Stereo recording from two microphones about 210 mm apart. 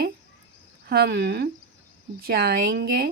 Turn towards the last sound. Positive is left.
turn(degrees=-50)  # may be behind; listen again after turning